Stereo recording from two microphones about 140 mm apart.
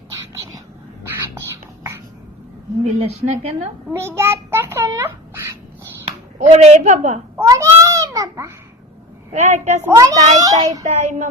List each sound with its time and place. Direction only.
0.1 s whispering: 20° right (ahead or behind)
2.8 s a woman's voice: 50° right (ahead or behind)
3.9 s a child's voice: 20° right (ahead or behind)
6.6 s a woman's voice: 55° right (ahead or behind)
7.3 s babbling: 25° right (ahead or behind)
9.3 s a woman's voice: 55° right (ahead or behind)
9.9 s child singing: 25° right (ahead or behind)
10.2 s a woman's voice: 60° right (ahead or behind)
10.6 s child singing: 25° right (ahead or behind)
10.8 s a woman's voice: 60° right (ahead or behind)